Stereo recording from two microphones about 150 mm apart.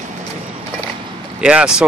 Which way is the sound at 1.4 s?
5° right (ahead or behind).